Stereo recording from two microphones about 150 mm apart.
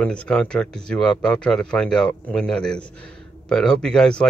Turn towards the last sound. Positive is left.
turn(degrees=5)  # may be behind; listen again after turning